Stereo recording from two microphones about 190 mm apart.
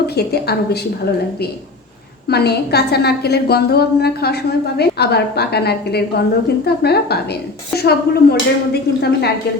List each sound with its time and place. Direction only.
0.2 s a woman's voice: 60° left (ahead or behind)
2.3 s a woman's voice: 60° left (ahead or behind)